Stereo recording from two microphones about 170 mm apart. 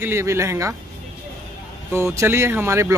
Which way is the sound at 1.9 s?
15° right (ahead or behind).